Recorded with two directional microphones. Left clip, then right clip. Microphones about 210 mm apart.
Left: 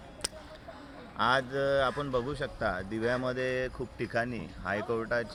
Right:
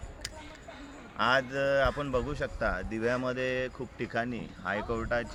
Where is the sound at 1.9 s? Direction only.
15° right (ahead or behind).